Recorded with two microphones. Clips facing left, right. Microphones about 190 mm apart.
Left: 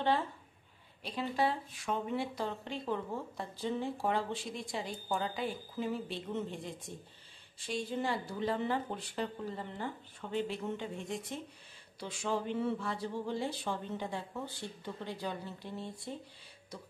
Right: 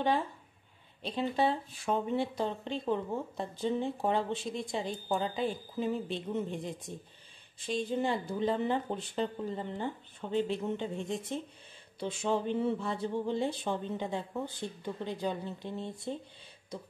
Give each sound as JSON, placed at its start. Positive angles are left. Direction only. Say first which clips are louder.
{"t": 1.0, "sound": "speech", "louder": "right 3 dB", "side_deg": -25}